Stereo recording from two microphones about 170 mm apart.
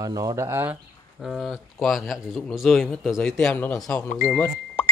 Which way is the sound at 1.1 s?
Centre (ahead or behind).